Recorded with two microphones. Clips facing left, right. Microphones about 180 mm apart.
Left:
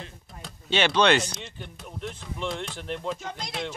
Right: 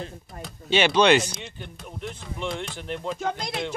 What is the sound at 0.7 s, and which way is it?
Speech, 10° right (ahead or behind).